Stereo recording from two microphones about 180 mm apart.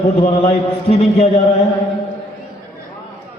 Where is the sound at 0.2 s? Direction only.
35° left (ahead or behind).